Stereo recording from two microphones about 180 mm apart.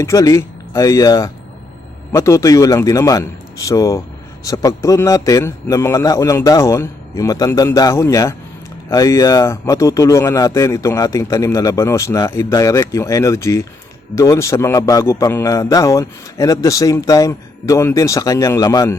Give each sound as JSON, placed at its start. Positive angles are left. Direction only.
{"t": 0.0, "sound": "a man's voice", "side_deg": 15}